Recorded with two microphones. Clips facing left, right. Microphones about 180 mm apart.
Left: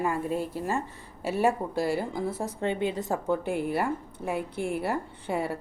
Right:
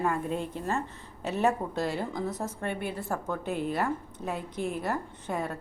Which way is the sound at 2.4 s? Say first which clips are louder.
Left 5 dB; 20° left (ahead or behind).